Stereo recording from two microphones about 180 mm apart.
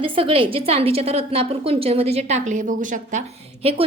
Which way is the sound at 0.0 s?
30° right (ahead or behind).